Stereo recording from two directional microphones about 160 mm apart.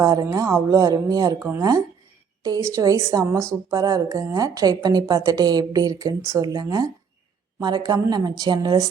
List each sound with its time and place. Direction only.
0.0 s a woman's voice: 20° right (ahead or behind)